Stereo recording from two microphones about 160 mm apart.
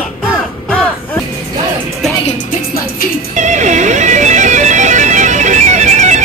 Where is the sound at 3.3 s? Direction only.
50° right (ahead or behind).